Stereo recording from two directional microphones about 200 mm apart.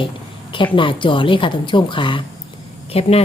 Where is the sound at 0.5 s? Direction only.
25° left (ahead or behind).